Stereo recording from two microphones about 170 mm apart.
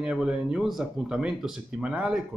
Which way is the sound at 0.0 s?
5° right (ahead or behind).